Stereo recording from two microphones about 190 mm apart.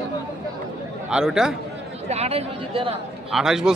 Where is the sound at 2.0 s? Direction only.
35° right (ahead or behind).